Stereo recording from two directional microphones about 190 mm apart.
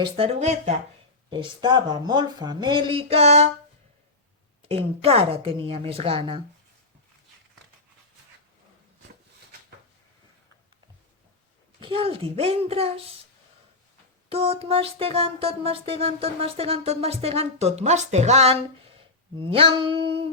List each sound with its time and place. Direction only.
0.0 s music: 30° right (ahead or behind)
1.3 s speech: 25° right (ahead or behind)
4.7 s speech: 30° right (ahead or behind)
11.8 s music: 30° right (ahead or behind)
14.3 s music: 30° right (ahead or behind)